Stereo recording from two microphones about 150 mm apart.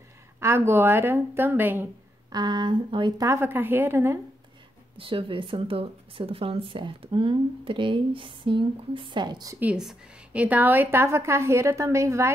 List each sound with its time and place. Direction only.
0.4 s a woman's voice: 15° right (ahead or behind)
2.3 s speech: 30° right (ahead or behind)
3.3 s a woman's voice: 15° right (ahead or behind)
4.9 s speech: 35° right (ahead or behind)
9.6 s a woman's voice: 5° right (ahead or behind)